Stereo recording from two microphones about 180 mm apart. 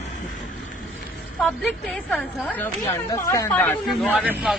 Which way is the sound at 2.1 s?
10° left (ahead or behind).